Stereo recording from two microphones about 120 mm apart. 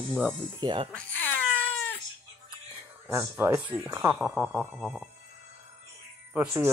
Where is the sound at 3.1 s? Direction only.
20° right (ahead or behind).